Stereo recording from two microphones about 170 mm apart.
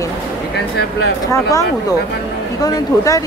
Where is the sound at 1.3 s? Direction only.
20° left (ahead or behind).